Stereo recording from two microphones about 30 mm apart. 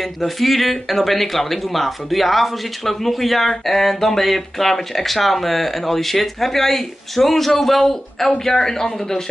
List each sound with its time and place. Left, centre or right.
0.0 s a man's voice: centre